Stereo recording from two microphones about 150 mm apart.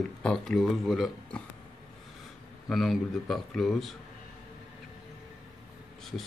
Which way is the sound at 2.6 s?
Centre (ahead or behind).